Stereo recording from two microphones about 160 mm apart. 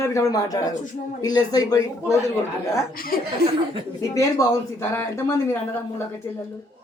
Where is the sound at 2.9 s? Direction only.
65° left (ahead or behind).